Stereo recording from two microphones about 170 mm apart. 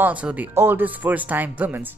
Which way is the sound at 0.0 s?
10° right (ahead or behind).